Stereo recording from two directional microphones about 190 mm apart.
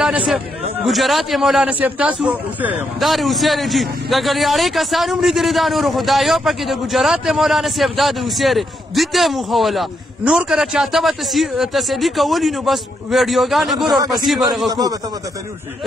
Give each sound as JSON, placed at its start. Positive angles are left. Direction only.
{"t": 0.8, "sound": "a man's voice", "side_deg": 0}
{"t": 14.7, "sound": "a man's voice", "side_deg": -20}